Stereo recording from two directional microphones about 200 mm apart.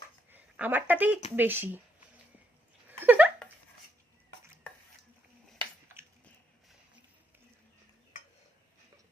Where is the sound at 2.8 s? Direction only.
10° right (ahead or behind).